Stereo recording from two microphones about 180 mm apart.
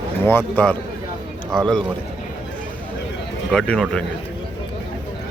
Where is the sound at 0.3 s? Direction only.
10° left (ahead or behind).